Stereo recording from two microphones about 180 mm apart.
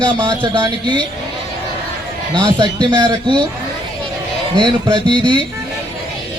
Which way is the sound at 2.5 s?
25° right (ahead or behind).